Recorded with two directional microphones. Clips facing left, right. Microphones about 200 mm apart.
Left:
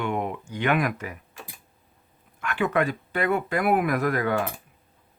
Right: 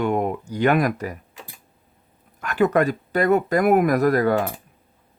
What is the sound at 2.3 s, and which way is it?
Speech, 40° right (ahead or behind).